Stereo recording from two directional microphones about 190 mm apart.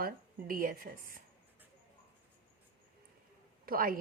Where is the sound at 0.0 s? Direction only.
45° right (ahead or behind).